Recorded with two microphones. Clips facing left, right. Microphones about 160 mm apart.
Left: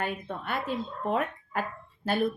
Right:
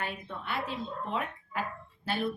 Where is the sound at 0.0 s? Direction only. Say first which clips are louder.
Left 5 dB; 45° left (ahead or behind).